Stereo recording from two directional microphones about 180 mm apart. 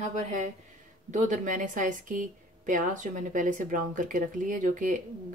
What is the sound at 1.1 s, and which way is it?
A woman's voice, 45° right (ahead or behind).